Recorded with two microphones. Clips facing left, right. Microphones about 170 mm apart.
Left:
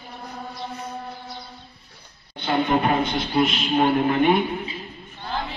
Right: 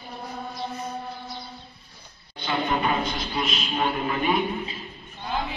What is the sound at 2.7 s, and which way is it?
A man's voice, 55° left (ahead or behind).